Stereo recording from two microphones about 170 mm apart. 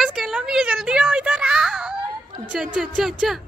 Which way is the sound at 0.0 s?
Centre (ahead or behind).